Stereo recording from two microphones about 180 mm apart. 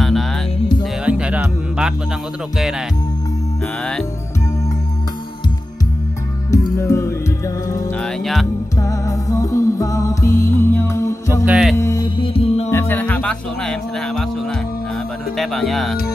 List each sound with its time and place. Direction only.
0.0 s music: centre (ahead or behind)
6.8 s music: 15° left (ahead or behind)
8.0 s music: centre (ahead or behind)
8.7 s music: 15° left (ahead or behind)
11.4 s music: 5° right (ahead or behind)
11.7 s music: 15° left (ahead or behind)
12.2 s music: 35° left (ahead or behind)
12.7 s music: 10° left (ahead or behind)
15.3 s speech: centre (ahead or behind)